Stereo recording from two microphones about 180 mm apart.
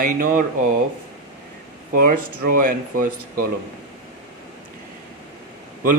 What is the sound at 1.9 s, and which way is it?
Speech, 50° right (ahead or behind).